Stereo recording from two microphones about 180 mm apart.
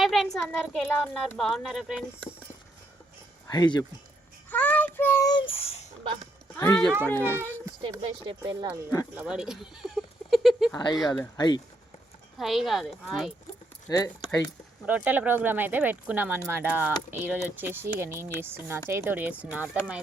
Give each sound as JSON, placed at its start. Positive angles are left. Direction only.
{"t": 0.0, "sound": "a sound", "side_deg": 0}
{"t": 0.3, "sound": "a child's voice", "side_deg": 5}
{"t": 3.4, "sound": "speech", "side_deg": 20}
{"t": 4.4, "sound": "child singing", "side_deg": 10}
{"t": 5.3, "sound": "speech", "side_deg": 30}
{"t": 6.6, "sound": "speech", "side_deg": 20}
{"t": 7.3, "sound": "speech", "side_deg": -15}
{"t": 8.3, "sound": "speech", "side_deg": -25}
{"t": 9.1, "sound": "speech", "side_deg": -5}
{"t": 11.1, "sound": "speech", "side_deg": 20}
{"t": 12.4, "sound": "a child's voice", "side_deg": 0}
{"t": 13.8, "sound": "speech", "side_deg": 15}
{"t": 14.8, "sound": "speech", "side_deg": -10}